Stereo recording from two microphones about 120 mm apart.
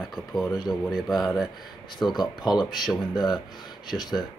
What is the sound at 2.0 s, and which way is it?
Speech, 35° left (ahead or behind).